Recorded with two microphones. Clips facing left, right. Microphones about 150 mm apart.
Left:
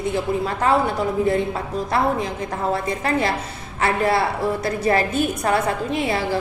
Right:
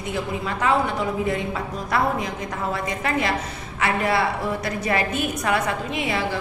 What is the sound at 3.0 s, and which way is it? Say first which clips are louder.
A woman's voice: left 2 dB; 30° left (ahead or behind).